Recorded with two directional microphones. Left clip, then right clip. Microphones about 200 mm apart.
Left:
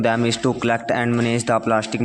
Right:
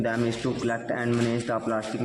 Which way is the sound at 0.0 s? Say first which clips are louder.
Left 8 dB; 30° left (ahead or behind).